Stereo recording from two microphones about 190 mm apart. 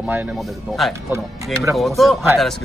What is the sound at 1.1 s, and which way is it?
Speech, 15° right (ahead or behind).